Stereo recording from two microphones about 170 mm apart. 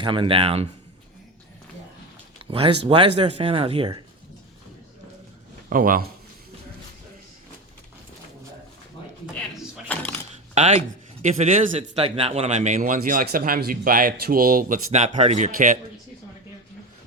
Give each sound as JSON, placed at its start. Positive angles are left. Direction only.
{"t": 0.0, "sound": "speech", "side_deg": -30}
{"t": 2.4, "sound": "a sound", "side_deg": -35}
{"t": 2.8, "sound": "speech", "side_deg": -30}
{"t": 5.6, "sound": "a man's voice", "side_deg": -55}
{"t": 9.9, "sound": "a sound", "side_deg": 10}
{"t": 10.5, "sound": "speech", "side_deg": -40}